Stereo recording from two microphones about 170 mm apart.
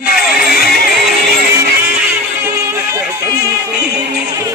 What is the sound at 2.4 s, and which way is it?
Music, 15° right (ahead or behind).